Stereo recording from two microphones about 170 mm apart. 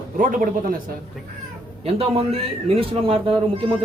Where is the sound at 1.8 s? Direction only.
35° right (ahead or behind).